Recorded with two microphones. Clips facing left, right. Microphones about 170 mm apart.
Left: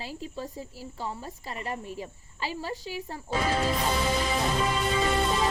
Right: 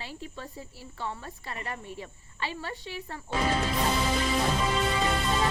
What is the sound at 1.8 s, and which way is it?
Speech, 40° left (ahead or behind).